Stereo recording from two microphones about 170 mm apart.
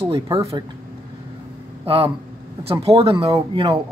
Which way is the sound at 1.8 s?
35° right (ahead or behind).